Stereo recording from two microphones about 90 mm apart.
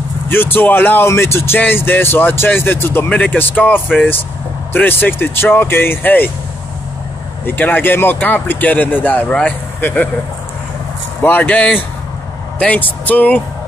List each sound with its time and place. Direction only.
0.3 s speech: 25° left (ahead or behind)
7.4 s speech: 20° left (ahead or behind)
11.2 s speech: 20° left (ahead or behind)